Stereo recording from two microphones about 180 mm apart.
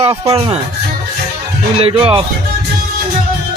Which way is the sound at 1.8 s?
30° right (ahead or behind).